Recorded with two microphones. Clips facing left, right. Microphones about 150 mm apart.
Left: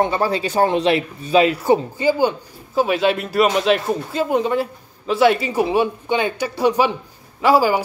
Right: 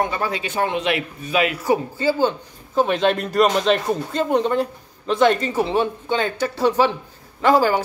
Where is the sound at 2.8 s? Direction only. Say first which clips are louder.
Left 1 dB; 5° left (ahead or behind).